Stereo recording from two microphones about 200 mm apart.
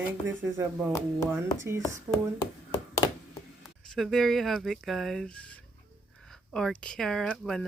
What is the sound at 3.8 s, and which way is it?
Speech, centre (ahead or behind).